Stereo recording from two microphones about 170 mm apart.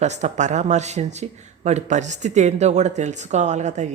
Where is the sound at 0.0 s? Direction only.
45° right (ahead or behind).